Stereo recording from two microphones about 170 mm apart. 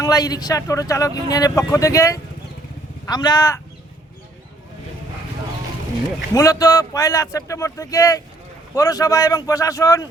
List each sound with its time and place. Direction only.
0.0 s speech: 20° left (ahead or behind)
6.3 s speech: 20° left (ahead or behind)